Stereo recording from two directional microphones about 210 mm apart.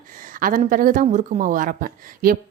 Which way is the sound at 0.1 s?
40° right (ahead or behind).